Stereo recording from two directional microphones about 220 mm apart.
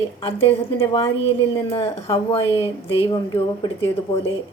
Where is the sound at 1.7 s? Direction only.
25° left (ahead or behind).